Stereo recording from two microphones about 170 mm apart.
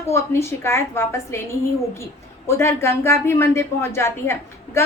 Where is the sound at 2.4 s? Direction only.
15° left (ahead or behind).